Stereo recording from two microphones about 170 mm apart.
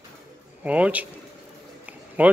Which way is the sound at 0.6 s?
10° right (ahead or behind).